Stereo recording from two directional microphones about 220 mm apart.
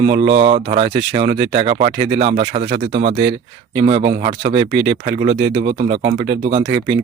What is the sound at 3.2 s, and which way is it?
Speech, 50° right (ahead or behind).